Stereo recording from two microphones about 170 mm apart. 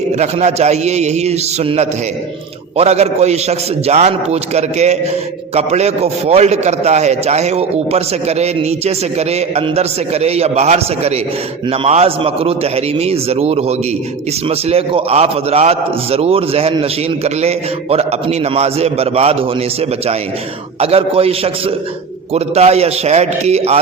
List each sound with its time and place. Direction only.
0.2 s a man's voice: 40° right (ahead or behind)
20.7 s a man's voice: 35° right (ahead or behind)